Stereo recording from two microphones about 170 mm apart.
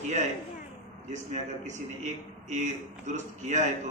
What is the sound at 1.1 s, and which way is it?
A man's voice, 45° right (ahead or behind).